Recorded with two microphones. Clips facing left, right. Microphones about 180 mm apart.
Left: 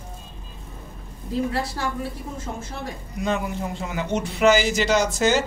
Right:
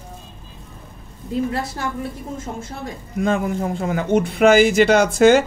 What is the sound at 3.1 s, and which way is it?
Speech, 50° right (ahead or behind).